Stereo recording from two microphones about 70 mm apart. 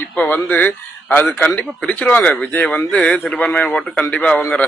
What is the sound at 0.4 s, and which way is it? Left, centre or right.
Speech, left.